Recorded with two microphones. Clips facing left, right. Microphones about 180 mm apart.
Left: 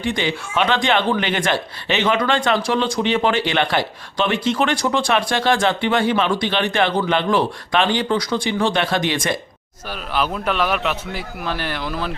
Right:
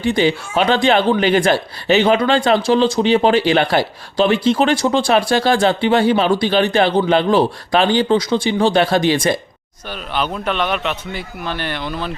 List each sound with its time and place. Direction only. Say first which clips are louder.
0.0 s speech: right 6 dB; 35° right (ahead or behind)
9.9 s a man's voice: right 1 dB; centre (ahead or behind)